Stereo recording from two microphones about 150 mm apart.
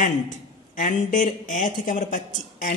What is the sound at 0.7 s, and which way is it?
Speech, 60° left (ahead or behind).